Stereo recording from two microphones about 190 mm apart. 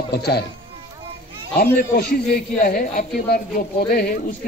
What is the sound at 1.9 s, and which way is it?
A man's voice, 50° left (ahead or behind).